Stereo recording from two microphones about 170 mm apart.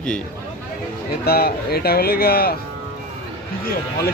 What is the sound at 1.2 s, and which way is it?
Speech, 65° left (ahead or behind).